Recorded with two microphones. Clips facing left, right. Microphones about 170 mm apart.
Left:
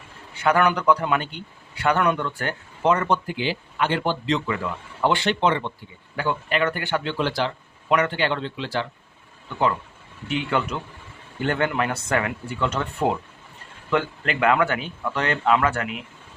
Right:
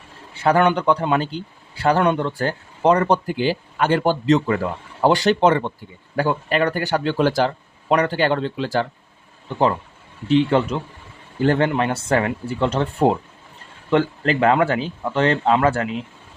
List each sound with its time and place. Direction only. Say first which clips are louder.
0.3 s speech: right 3 dB; 30° right (ahead or behind)
9.5 s speech: right 4 dB; 35° right (ahead or behind)